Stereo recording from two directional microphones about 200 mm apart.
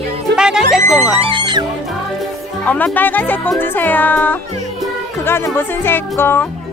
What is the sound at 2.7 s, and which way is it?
Speech, 10° left (ahead or behind).